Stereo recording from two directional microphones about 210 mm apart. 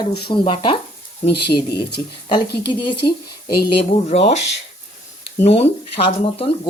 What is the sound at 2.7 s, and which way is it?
Speech, 25° left (ahead or behind).